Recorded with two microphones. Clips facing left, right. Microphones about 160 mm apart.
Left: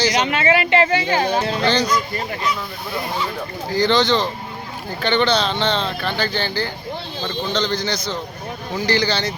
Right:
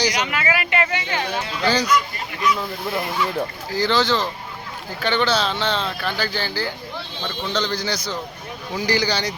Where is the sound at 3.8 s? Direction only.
5° right (ahead or behind).